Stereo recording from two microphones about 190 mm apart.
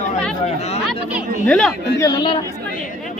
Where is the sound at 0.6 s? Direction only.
35° left (ahead or behind).